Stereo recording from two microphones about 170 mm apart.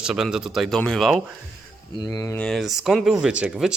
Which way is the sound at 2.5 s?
Centre (ahead or behind).